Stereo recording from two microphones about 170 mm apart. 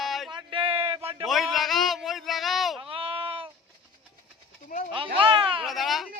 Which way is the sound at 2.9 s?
35° right (ahead or behind).